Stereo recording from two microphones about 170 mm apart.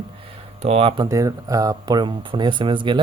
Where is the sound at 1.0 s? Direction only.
20° right (ahead or behind).